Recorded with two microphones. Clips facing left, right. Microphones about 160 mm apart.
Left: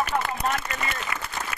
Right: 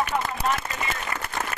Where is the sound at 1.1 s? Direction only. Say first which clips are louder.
Right 1 dB; 40° right (ahead or behind).